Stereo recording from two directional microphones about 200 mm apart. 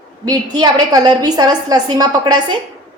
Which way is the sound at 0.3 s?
20° right (ahead or behind).